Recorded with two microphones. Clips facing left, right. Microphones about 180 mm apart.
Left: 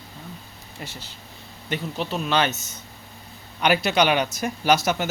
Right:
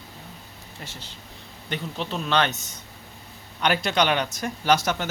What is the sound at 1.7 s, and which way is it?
Speech, 5° left (ahead or behind).